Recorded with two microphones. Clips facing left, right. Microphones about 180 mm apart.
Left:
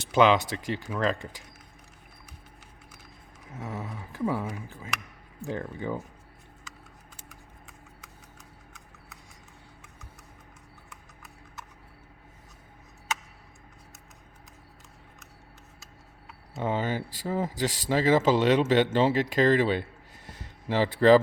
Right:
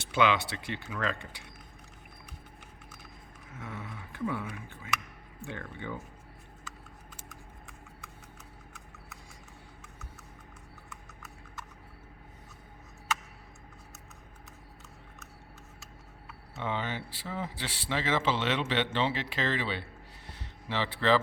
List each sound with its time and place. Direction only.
0.0 s speech: 40° left (ahead or behind)
3.6 s speech: 40° left (ahead or behind)
16.6 s speech: 40° left (ahead or behind)
20.2 s a sound: 45° left (ahead or behind)